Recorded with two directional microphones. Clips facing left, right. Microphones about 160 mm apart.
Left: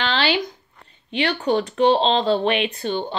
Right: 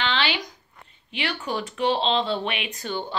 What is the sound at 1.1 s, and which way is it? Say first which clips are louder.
Speech: left 8 dB; 35° left (ahead or behind).